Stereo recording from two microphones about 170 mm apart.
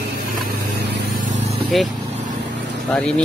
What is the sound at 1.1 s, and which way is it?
Vehicle, 45° right (ahead or behind).